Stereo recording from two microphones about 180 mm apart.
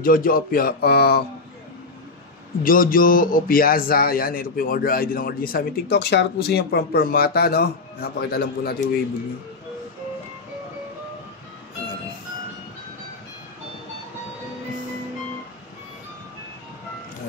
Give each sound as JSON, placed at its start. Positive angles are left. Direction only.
{"t": 0.0, "sound": "a man's voice", "side_deg": 50}
{"t": 2.6, "sound": "a man's voice", "side_deg": 50}